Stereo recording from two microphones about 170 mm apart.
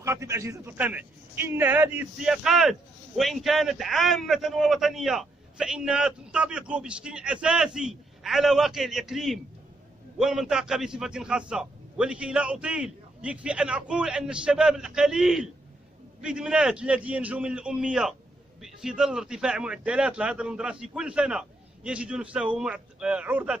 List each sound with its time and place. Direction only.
0.0 s a man's voice: 15° right (ahead or behind)